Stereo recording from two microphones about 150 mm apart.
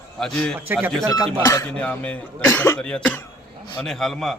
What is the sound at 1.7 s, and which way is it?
Speech, 10° left (ahead or behind).